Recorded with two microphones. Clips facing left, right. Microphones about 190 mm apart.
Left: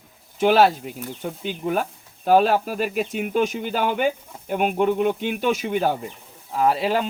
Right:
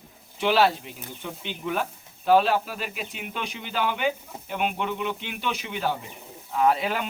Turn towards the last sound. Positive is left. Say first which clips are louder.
# left 3 dB
turn(degrees=35)  # may be behind; listen again after turning